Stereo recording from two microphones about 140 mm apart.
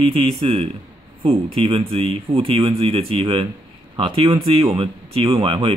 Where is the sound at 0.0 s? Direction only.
45° right (ahead or behind).